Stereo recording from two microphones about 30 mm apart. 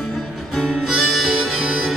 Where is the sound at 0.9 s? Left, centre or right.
Centre.